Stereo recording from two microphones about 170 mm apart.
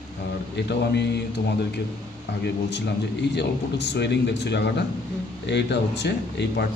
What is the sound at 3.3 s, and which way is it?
Speech, 90° left.